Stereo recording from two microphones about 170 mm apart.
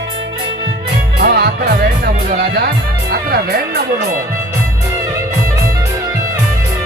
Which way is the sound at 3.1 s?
65° right (ahead or behind).